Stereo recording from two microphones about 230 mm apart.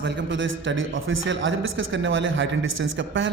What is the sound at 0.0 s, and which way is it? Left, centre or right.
A man's voice, right.